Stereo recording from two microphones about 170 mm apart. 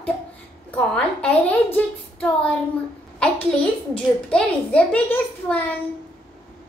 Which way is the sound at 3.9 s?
5° left (ahead or behind).